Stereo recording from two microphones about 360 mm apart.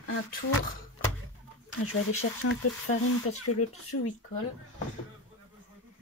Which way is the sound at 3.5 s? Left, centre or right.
Left.